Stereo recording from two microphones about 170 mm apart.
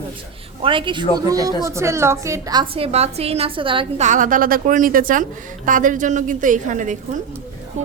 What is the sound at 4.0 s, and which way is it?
A woman's voice, 50° right (ahead or behind).